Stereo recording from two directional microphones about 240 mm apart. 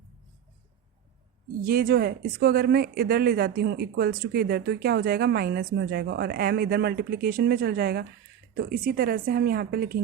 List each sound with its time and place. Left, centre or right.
1.6 s speech: right